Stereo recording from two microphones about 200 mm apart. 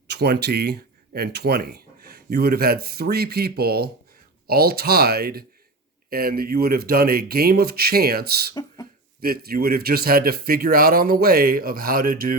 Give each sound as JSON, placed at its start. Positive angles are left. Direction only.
{"t": 0.1, "sound": "a man's voice", "side_deg": -55}